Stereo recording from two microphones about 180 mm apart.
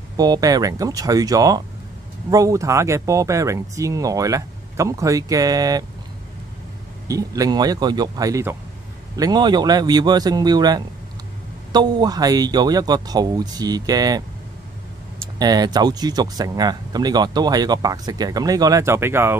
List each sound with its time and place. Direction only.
0.2 s speech: 20° right (ahead or behind)
7.1 s speech: 20° right (ahead or behind)
15.3 s speech: 20° right (ahead or behind)